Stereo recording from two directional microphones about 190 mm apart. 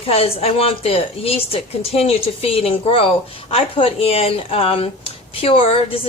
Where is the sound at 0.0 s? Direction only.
30° left (ahead or behind).